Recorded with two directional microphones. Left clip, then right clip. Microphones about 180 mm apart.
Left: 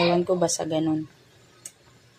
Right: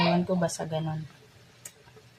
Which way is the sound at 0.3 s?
30° left (ahead or behind).